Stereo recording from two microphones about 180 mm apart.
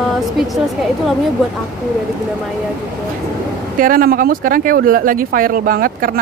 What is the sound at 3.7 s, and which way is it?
Speech, 50° right (ahead or behind).